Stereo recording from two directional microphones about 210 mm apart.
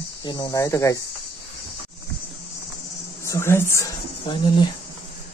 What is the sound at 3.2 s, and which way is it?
Speech, 15° left (ahead or behind).